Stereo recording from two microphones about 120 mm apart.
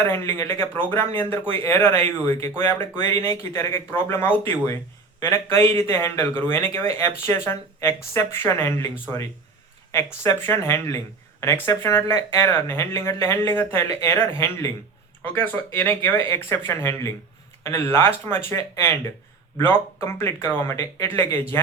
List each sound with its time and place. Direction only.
0.1 s speech: 20° left (ahead or behind)
3.0 s speech: 20° left (ahead or behind)